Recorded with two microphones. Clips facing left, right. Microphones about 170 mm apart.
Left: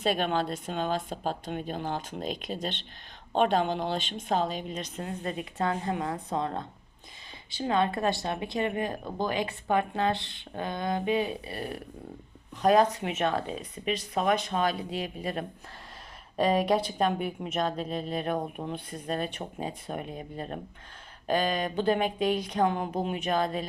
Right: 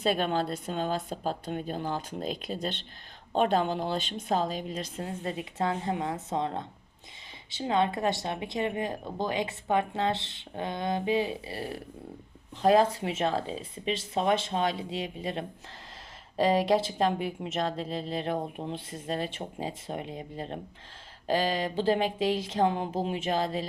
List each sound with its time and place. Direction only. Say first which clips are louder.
0.0 s speech: even; 35° right (ahead or behind)